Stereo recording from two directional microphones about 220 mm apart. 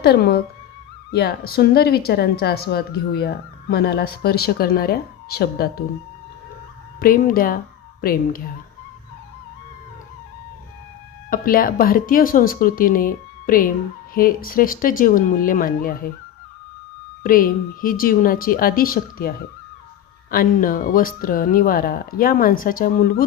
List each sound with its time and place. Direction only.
0.0 s a woman's voice: 45° left (ahead or behind)
7.0 s speech: 40° left (ahead or behind)
11.3 s speech: 40° left (ahead or behind)
17.2 s speech: 40° left (ahead or behind)
20.3 s speech: 40° left (ahead or behind)